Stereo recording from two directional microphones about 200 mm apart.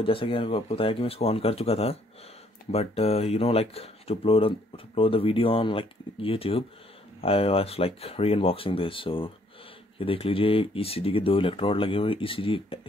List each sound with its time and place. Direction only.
0.0 s speech: 25° left (ahead or behind)